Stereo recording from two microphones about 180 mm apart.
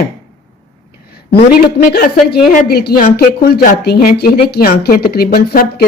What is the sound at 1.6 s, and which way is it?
Speech, 55° left (ahead or behind).